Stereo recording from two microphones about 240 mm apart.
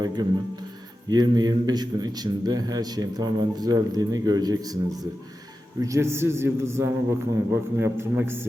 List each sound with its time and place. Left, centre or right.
1.1 s a man's voice: centre